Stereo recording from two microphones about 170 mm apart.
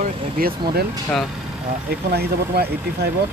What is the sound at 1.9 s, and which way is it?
Speech, 70° right (ahead or behind).